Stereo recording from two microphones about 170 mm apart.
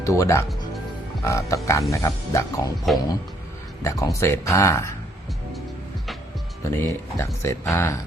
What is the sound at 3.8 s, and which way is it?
Speech, 20° left (ahead or behind).